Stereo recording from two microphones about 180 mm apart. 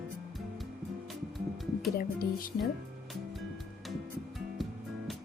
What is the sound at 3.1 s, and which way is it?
Music, centre (ahead or behind).